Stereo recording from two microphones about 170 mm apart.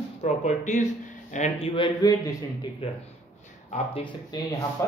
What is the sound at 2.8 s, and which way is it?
Speech, 35° left (ahead or behind).